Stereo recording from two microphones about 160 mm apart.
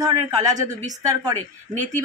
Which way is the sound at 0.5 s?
50° right (ahead or behind).